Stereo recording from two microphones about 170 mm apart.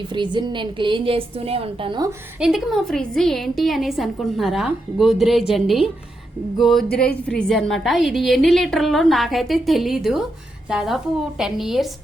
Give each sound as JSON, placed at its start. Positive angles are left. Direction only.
{"t": 0.1, "sound": "a woman's voice", "side_deg": -25}
{"t": 2.4, "sound": "a woman's voice", "side_deg": 0}